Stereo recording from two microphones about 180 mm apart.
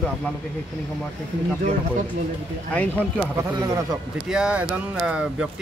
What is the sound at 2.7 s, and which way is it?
Speech, 5° left (ahead or behind).